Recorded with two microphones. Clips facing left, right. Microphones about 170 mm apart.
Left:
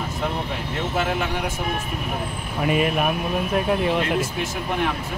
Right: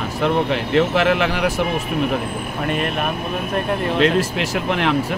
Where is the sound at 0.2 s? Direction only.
90° right.